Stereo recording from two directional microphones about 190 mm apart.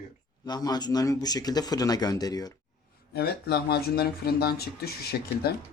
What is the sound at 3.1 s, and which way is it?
Speech, 55° left (ahead or behind).